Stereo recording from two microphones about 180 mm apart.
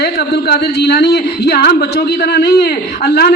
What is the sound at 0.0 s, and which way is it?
A man's voice, 65° left (ahead or behind).